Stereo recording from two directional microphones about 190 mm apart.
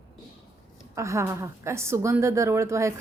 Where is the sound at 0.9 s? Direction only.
15° right (ahead or behind).